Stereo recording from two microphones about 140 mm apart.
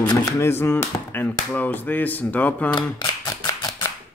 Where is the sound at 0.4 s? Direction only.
20° left (ahead or behind).